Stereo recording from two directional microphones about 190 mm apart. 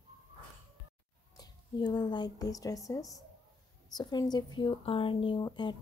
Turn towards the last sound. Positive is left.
turn(degrees=25)  # may be behind; listen again after turning